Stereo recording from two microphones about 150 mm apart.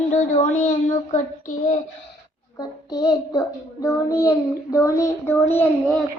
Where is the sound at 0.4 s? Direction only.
60° left (ahead or behind).